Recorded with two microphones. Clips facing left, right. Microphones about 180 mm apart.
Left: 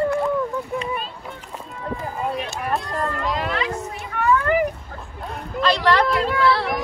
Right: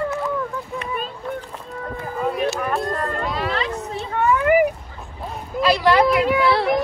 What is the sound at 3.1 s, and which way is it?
Music, 35° right (ahead or behind).